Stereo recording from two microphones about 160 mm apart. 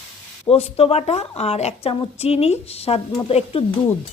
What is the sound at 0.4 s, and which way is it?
A woman's voice, 40° left (ahead or behind).